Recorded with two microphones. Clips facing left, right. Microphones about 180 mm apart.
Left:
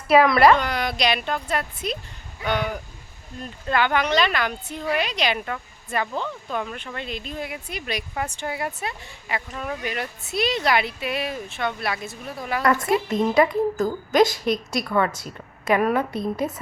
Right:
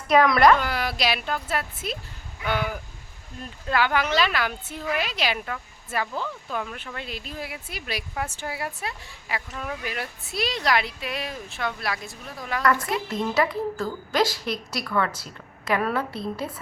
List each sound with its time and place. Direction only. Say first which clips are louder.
0.1 s speech: left 2 dB; 5° left (ahead or behind)
13.1 s a woman's voice: left 4 dB; 20° left (ahead or behind)